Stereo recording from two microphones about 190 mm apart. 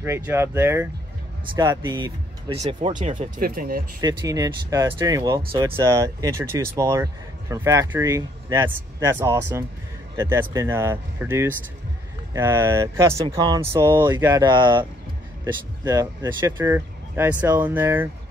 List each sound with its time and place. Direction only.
0.0 s speech: 15° right (ahead or behind)
3.0 s speech: 40° right (ahead or behind)
4.0 s speech: 20° right (ahead or behind)